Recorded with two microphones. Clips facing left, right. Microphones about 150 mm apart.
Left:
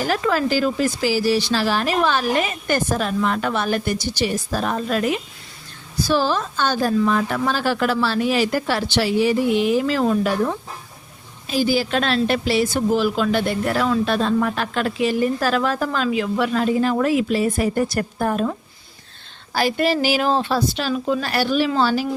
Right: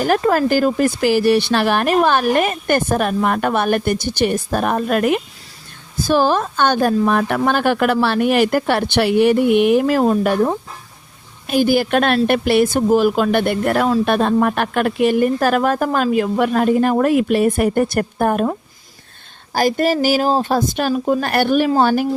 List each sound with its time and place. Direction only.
0.0 s a woman's voice: 50° right (ahead or behind)
19.5 s speech: 45° right (ahead or behind)